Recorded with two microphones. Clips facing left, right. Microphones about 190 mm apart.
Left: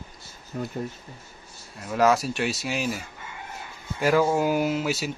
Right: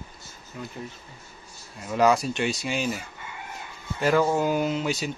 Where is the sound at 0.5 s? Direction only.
45° left (ahead or behind).